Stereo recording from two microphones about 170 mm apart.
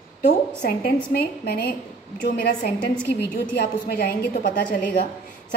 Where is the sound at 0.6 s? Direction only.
65° left (ahead or behind).